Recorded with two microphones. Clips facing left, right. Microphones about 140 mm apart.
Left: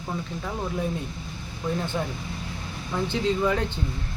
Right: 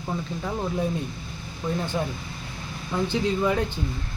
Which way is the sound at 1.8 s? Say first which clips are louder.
Right 1 dB; 15° right (ahead or behind).